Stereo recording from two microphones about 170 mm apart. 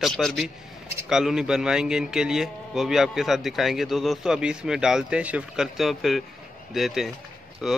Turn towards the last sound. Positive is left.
turn(degrees=0)  # may be behind; listen again after turning